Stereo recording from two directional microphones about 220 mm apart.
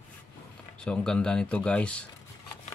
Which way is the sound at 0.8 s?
5° left (ahead or behind).